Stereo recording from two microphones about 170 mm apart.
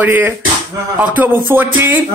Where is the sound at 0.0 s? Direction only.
10° right (ahead or behind).